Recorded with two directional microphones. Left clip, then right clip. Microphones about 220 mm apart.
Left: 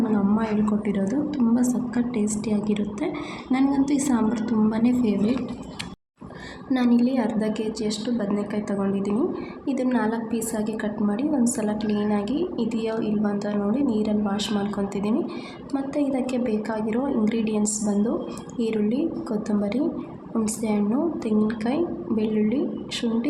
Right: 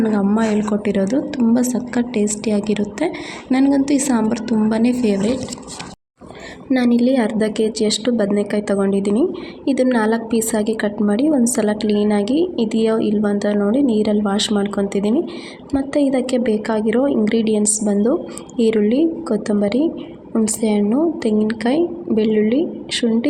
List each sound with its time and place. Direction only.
0.3 s a woman's voice: 30° right (ahead or behind)
6.7 s a woman's voice: 25° right (ahead or behind)